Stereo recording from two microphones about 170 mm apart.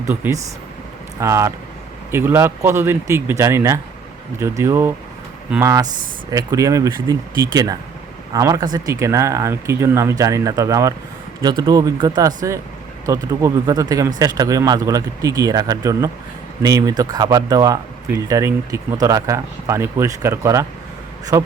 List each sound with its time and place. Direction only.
0.1 s speech: 15° right (ahead or behind)